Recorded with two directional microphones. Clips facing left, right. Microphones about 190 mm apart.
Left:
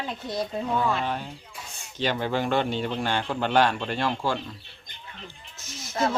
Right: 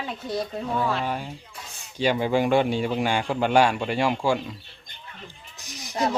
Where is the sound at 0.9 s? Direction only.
10° right (ahead or behind).